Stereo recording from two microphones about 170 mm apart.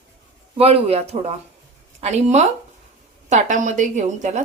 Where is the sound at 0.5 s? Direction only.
35° right (ahead or behind).